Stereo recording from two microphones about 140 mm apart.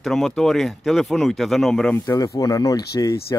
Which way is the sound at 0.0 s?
5° left (ahead or behind).